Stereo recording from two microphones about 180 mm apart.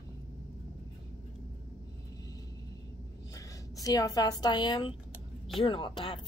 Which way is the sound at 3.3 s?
20° left (ahead or behind).